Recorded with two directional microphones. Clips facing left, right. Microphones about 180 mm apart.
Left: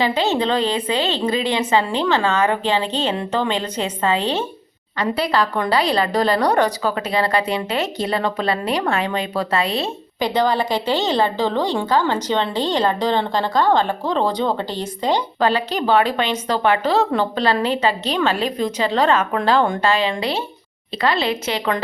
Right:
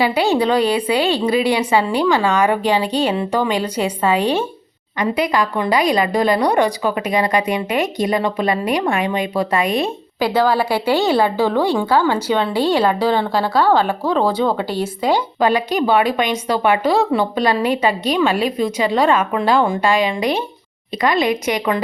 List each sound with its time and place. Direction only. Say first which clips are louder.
0.0 s a woman's voice: right 3 dB; 10° right (ahead or behind)
10.2 s a woman's voice: right 2 dB; 5° right (ahead or behind)